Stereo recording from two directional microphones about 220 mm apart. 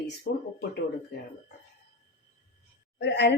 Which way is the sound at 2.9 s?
50° left (ahead or behind).